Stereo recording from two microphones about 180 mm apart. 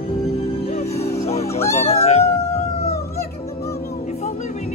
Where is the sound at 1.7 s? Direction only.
35° left (ahead or behind).